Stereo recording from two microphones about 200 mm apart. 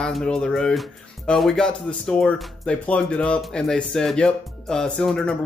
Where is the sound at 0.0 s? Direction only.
5° left (ahead or behind).